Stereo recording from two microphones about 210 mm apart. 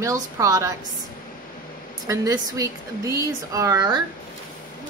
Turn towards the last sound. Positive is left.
turn(degrees=-15)  # may be behind; listen again after turning